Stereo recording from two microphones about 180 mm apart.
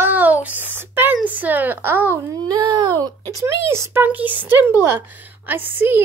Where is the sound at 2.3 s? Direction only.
20° right (ahead or behind).